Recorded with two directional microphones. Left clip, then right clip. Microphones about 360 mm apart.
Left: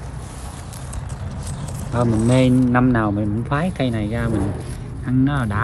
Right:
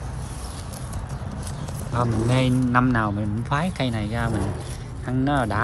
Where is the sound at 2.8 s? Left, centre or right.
Left.